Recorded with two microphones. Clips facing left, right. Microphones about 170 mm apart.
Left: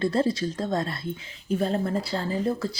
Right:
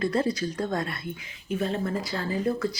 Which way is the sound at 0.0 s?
30° left (ahead or behind).